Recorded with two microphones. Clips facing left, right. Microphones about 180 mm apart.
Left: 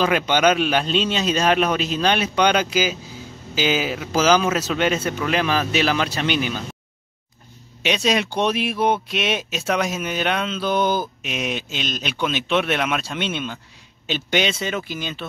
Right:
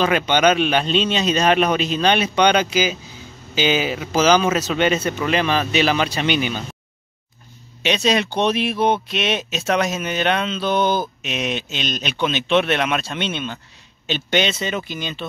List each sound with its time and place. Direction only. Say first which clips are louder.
0.0 s speech: right 1 dB; 5° left (ahead or behind)
7.8 s speech: right 2 dB; 10° left (ahead or behind)